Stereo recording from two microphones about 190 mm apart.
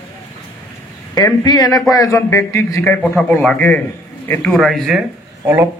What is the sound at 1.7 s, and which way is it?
Speech, centre (ahead or behind).